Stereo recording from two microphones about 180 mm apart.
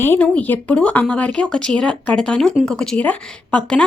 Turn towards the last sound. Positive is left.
turn(degrees=5)  # may be behind; listen again after turning